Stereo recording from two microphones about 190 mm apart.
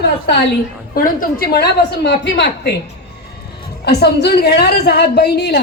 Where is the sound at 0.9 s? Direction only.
50° left (ahead or behind).